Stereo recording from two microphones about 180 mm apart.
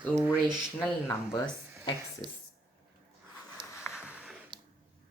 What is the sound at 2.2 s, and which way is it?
Speech, 25° left (ahead or behind).